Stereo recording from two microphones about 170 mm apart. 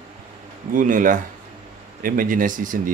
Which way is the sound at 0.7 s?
50° right (ahead or behind).